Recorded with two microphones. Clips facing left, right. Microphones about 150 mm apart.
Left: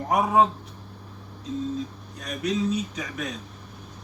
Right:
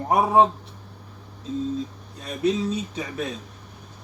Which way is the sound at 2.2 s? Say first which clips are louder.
Right 3 dB; 30° right (ahead or behind).